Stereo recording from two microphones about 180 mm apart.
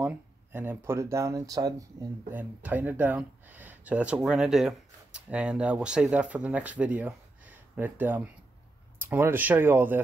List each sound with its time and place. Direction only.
0.0 s speech: 10° right (ahead or behind)
2.3 s speech: 10° right (ahead or behind)